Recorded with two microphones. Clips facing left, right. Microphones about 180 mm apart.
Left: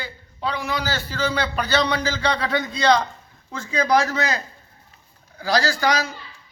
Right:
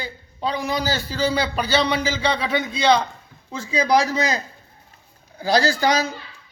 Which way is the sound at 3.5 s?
10° right (ahead or behind).